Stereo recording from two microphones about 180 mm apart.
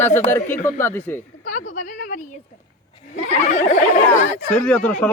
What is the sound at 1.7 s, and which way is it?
A woman's voice, 45° left (ahead or behind).